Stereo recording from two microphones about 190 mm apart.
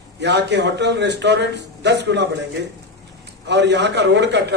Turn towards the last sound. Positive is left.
turn(degrees=-65)  # may be behind; listen again after turning